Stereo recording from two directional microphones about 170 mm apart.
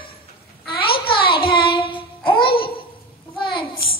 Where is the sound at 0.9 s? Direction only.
30° left (ahead or behind).